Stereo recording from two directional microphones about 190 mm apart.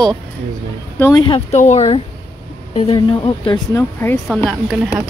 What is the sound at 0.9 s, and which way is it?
Speech, 10° left (ahead or behind).